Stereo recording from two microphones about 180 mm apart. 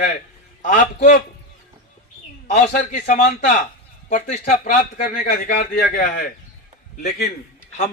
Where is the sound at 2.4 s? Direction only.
40° left (ahead or behind).